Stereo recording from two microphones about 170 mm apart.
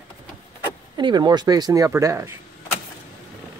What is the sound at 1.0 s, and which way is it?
Speech, 25° right (ahead or behind).